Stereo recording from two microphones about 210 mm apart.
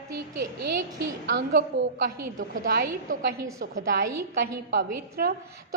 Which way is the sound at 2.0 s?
40° right (ahead or behind).